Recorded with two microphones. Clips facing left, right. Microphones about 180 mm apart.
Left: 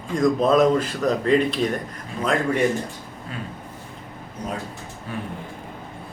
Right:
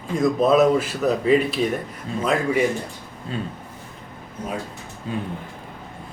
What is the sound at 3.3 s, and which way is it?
Speech, 30° right (ahead or behind).